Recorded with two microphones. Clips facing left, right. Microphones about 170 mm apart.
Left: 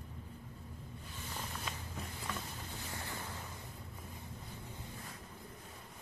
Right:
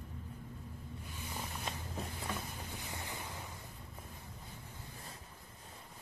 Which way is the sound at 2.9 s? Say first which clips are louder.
Left 2 dB; 20° right (ahead or behind).